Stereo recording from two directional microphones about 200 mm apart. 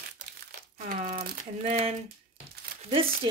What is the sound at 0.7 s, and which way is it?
Speech, 40° right (ahead or behind).